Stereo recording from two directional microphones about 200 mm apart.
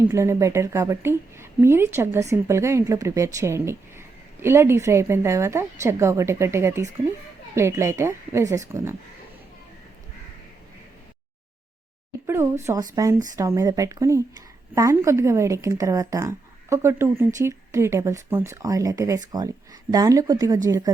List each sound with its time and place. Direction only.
0.1 s a woman's voice: 15° right (ahead or behind)
12.2 s a woman's voice: 15° right (ahead or behind)